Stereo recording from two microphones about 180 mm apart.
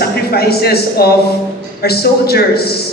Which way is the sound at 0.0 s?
60° left (ahead or behind).